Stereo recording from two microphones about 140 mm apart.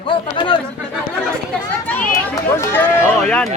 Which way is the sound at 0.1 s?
35° left (ahead or behind).